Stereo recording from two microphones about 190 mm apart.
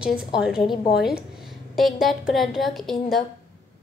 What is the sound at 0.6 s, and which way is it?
Speech, 25° left (ahead or behind).